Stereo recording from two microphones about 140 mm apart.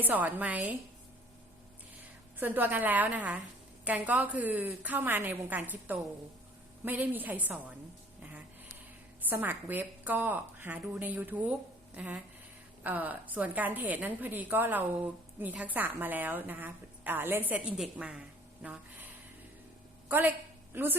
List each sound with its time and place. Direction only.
0.0 s a woman's voice: 10° right (ahead or behind)
2.4 s a woman's voice: 15° right (ahead or behind)
9.3 s a woman's voice: 15° right (ahead or behind)
20.1 s a woman's voice: 15° right (ahead or behind)